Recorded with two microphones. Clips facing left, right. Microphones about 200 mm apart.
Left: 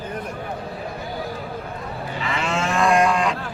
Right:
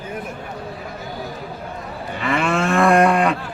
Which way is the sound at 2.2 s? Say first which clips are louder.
Right 5 dB; 55° right (ahead or behind).